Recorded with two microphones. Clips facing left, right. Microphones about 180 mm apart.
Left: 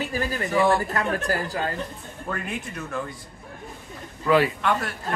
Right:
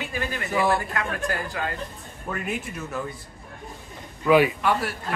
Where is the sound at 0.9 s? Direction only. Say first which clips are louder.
Left 3 dB; 35° left (ahead or behind).